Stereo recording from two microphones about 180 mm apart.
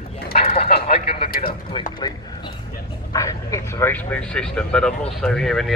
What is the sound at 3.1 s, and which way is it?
Speech, 20° left (ahead or behind).